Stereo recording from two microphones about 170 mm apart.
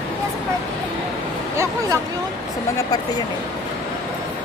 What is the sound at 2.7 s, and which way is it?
Speech, 20° left (ahead or behind).